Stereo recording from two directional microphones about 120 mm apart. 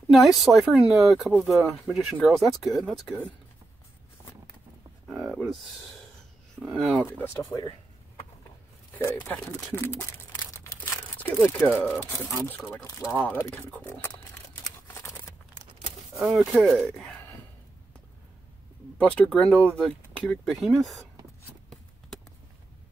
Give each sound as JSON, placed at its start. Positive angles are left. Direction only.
{"t": 0.1, "sound": "speech", "side_deg": 0}
{"t": 5.0, "sound": "a sound", "side_deg": 0}
{"t": 6.6, "sound": "speech", "side_deg": -5}
{"t": 7.5, "sound": "speech", "side_deg": 25}
{"t": 8.9, "sound": "speech", "side_deg": 15}
{"t": 10.8, "sound": "crumpling", "side_deg": 15}
{"t": 11.3, "sound": "speech", "side_deg": 0}
{"t": 11.6, "sound": "speech", "side_deg": 10}
{"t": 14.6, "sound": "crumpling", "side_deg": 25}
{"t": 16.2, "sound": "speech", "side_deg": 0}
{"t": 18.9, "sound": "speech", "side_deg": 5}